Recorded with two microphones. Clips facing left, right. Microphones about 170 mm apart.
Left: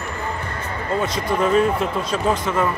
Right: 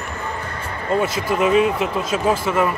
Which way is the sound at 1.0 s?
5° right (ahead or behind).